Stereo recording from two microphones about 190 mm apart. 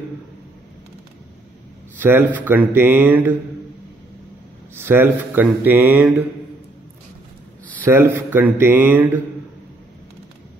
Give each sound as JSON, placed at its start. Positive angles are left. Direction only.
{"t": 2.0, "sound": "speech", "side_deg": -10}
{"t": 4.7, "sound": "speech", "side_deg": -10}
{"t": 7.8, "sound": "speech", "side_deg": -10}